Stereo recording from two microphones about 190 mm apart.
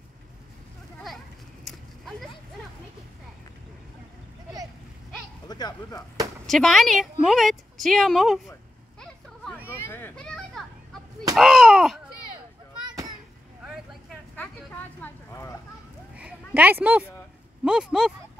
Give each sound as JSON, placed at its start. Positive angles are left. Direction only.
{"t": 1.0, "sound": "a sound", "side_deg": 0}
{"t": 5.5, "sound": "speech", "side_deg": 20}
{"t": 6.4, "sound": "a woman's voice", "side_deg": 0}
{"t": 9.0, "sound": "vehicle", "side_deg": 5}
{"t": 9.7, "sound": "children playing", "side_deg": 10}
{"t": 11.3, "sound": "a woman's voice", "side_deg": -5}
{"t": 15.0, "sound": "speech", "side_deg": 15}
{"t": 16.2, "sound": "a sound", "side_deg": -5}
{"t": 17.6, "sound": "a woman's voice", "side_deg": 0}